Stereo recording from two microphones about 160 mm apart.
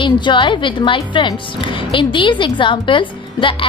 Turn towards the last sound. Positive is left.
turn(degrees=30)  # may be behind; listen again after turning